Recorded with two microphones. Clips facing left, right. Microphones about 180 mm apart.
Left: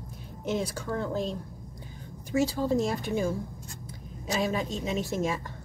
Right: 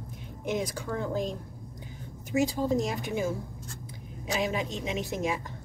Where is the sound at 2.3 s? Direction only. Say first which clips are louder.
Left 1 dB; 15° right (ahead or behind).